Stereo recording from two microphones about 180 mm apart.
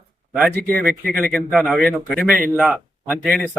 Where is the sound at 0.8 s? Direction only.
55° right (ahead or behind).